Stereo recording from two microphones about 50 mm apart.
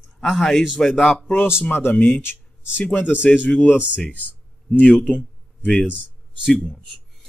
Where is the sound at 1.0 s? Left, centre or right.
Left.